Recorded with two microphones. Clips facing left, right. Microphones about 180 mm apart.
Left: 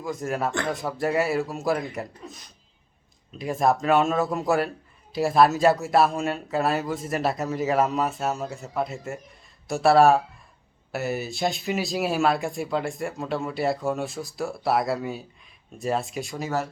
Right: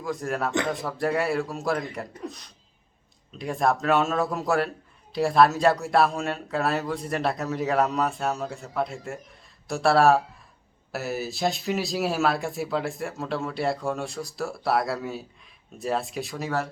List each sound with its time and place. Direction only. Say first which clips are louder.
0.0 s speech: left 1 dB; centre (ahead or behind)